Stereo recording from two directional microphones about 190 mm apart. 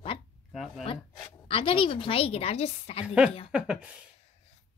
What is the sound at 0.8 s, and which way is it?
A woman's voice, 30° left (ahead or behind).